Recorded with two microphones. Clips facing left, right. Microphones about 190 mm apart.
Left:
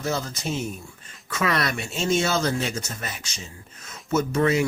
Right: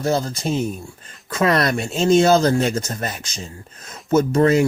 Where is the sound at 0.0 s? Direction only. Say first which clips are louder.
Right 7 dB; 35° right (ahead or behind).